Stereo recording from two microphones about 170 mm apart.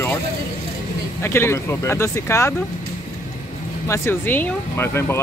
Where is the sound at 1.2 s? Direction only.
15° left (ahead or behind).